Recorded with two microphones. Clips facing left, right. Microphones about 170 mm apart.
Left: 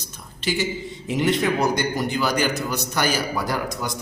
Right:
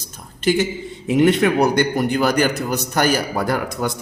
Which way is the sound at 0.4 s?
50° right (ahead or behind).